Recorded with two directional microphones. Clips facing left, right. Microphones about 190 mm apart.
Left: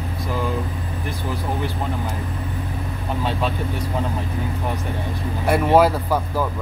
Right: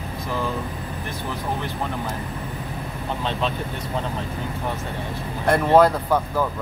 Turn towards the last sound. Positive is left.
turn(degrees=10)  # may be behind; listen again after turning